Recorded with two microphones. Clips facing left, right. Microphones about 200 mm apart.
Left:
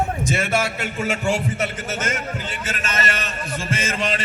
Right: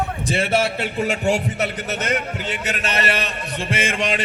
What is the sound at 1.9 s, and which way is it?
Speech, 40° left (ahead or behind).